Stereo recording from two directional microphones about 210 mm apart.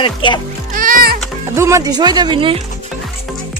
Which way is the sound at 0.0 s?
25° left (ahead or behind).